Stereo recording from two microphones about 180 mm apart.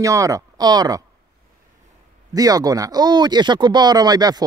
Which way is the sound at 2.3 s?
20° right (ahead or behind).